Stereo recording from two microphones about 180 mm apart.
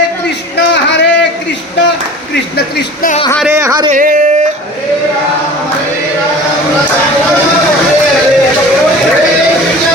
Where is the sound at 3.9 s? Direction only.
45° right (ahead or behind).